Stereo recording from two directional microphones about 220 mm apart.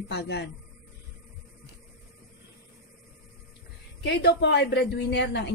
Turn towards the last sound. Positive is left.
turn(degrees=50)  # may be behind; listen again after turning